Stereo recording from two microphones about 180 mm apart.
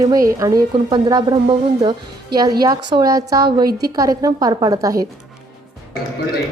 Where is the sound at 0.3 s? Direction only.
15° right (ahead or behind).